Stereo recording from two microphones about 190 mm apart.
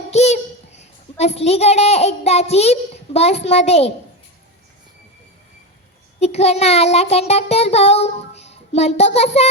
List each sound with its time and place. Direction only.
0.1 s a child's voice: 35° left (ahead or behind)
6.1 s child singing: 35° left (ahead or behind)